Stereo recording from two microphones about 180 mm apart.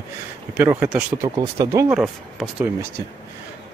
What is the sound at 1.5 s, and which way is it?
Speech, 20° right (ahead or behind).